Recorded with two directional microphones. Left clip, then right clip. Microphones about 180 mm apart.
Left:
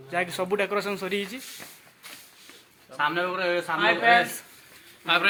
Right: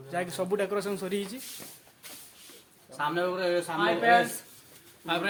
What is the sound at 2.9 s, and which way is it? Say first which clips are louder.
Speech: left 3 dB; centre (ahead or behind).